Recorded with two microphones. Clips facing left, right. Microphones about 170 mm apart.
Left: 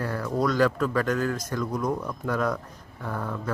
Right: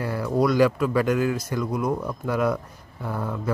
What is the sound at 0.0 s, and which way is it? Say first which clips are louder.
Speech: right 3 dB; 10° right (ahead or behind).